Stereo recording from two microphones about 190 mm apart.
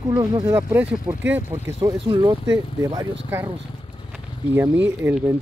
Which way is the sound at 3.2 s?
10° right (ahead or behind).